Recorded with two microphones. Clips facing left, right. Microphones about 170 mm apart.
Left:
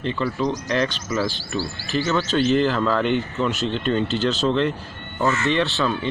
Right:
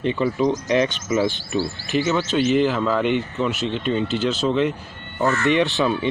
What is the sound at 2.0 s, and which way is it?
Speech, 10° right (ahead or behind).